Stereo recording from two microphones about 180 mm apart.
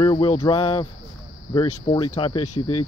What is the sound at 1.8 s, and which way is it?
Speech, 30° left (ahead or behind).